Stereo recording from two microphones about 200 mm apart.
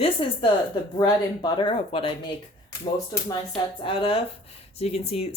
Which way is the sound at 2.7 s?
15° left (ahead or behind).